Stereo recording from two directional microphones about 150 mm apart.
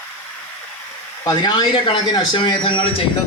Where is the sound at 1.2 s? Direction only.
30° left (ahead or behind).